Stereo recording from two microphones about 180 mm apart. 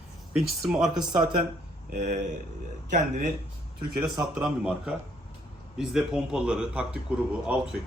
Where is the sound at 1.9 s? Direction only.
50° right (ahead or behind).